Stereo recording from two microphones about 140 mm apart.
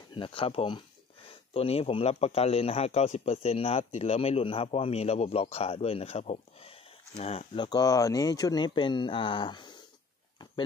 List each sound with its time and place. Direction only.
0.1 s speech: 40° left (ahead or behind)
7.6 s speech: 25° left (ahead or behind)